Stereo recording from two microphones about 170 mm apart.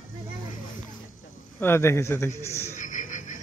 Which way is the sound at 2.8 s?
50° left (ahead or behind).